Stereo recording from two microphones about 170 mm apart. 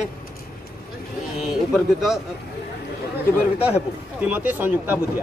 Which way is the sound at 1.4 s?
Centre (ahead or behind).